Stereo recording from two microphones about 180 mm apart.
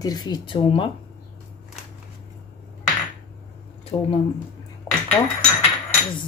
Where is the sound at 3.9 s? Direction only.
30° left (ahead or behind).